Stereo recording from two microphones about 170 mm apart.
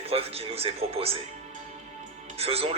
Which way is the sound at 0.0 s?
35° right (ahead or behind).